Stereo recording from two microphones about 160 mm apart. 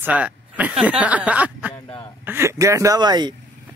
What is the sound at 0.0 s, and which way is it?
Speech, 10° right (ahead or behind).